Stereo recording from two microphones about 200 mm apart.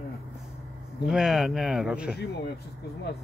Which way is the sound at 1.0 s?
5° right (ahead or behind).